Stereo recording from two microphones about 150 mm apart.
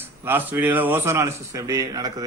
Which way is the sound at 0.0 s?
15° right (ahead or behind).